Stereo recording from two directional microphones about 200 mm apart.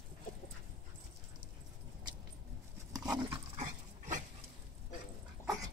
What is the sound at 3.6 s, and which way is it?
Dog, 40° right (ahead or behind).